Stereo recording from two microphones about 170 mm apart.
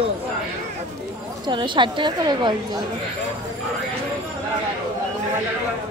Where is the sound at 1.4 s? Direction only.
30° right (ahead or behind).